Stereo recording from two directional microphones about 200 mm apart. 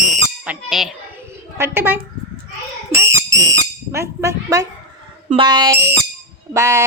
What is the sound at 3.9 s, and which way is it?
Speech, 15° right (ahead or behind).